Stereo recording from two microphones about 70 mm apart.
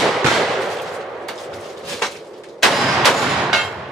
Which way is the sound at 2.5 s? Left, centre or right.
Centre.